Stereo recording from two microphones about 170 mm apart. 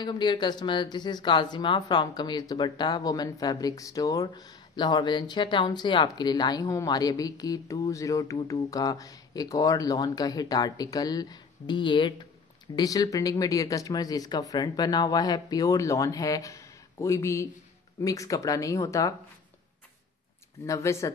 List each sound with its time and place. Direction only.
0.0 s speech: 25° left (ahead or behind)
20.6 s speech: 15° left (ahead or behind)